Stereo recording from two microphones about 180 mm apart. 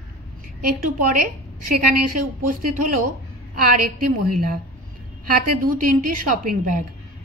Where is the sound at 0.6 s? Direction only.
50° right (ahead or behind).